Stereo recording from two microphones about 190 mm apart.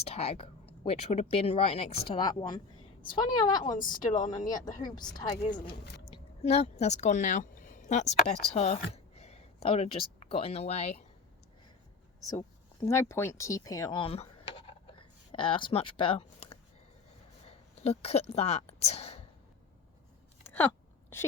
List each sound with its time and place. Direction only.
0.0 s speech: 30° left (ahead or behind)
6.4 s speech: 35° left (ahead or behind)
12.3 s speech: 15° left (ahead or behind)
14.0 s a sound: 30° left (ahead or behind)
20.4 s a sound: 10° left (ahead or behind)
21.1 s a woman's voice: 10° left (ahead or behind)